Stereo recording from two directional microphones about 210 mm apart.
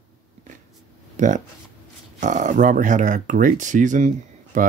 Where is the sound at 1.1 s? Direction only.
35° right (ahead or behind).